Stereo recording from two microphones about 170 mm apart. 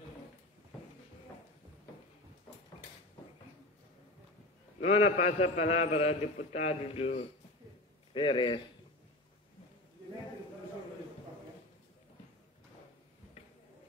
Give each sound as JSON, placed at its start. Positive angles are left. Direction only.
{"t": 4.7, "sound": "a man's voice", "side_deg": 40}